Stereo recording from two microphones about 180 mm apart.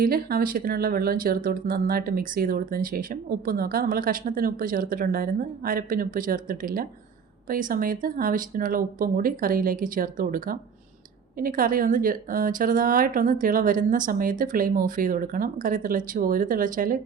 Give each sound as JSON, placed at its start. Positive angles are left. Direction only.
{"t": 0.0, "sound": "speech", "side_deg": -55}